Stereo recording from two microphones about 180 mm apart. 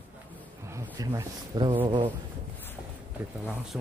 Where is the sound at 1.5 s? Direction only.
25° right (ahead or behind).